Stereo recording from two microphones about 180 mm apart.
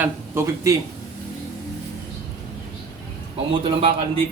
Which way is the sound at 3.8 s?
30° right (ahead or behind).